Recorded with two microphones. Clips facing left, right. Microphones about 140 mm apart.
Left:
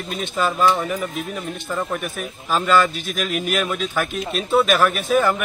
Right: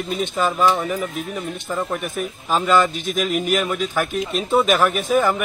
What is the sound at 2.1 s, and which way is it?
Speech, 15° right (ahead or behind).